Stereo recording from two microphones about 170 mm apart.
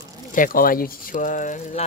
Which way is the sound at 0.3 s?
55° left (ahead or behind).